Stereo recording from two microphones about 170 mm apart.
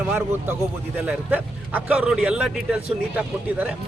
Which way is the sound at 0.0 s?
10° right (ahead or behind).